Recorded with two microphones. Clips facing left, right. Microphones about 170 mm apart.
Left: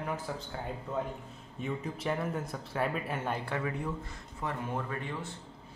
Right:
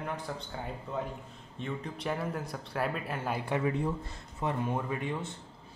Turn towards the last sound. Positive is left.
turn(degrees=-20)  # may be behind; listen again after turning